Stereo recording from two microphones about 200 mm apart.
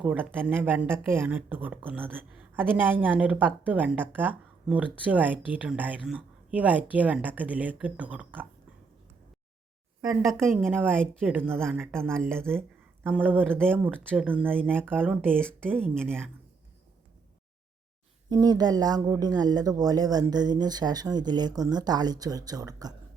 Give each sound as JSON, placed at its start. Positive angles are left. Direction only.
{"t": 0.0, "sound": "speech", "side_deg": -10}
{"t": 10.2, "sound": "speech", "side_deg": 0}
{"t": 10.7, "sound": "speech", "side_deg": -10}
{"t": 15.2, "sound": "speech", "side_deg": 5}
{"t": 15.7, "sound": "speech", "side_deg": -10}
{"t": 18.3, "sound": "speech", "side_deg": -20}